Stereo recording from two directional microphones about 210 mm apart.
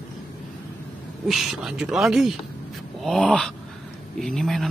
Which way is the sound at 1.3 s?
Centre (ahead or behind).